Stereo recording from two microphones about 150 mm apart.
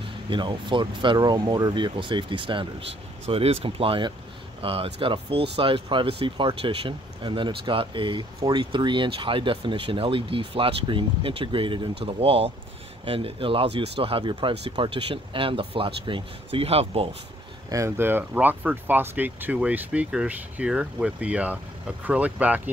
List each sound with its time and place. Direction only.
0.3 s speech: 30° right (ahead or behind)
17.6 s speech: 20° right (ahead or behind)